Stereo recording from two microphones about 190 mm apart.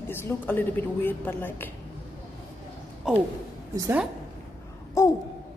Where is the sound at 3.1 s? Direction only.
5° right (ahead or behind).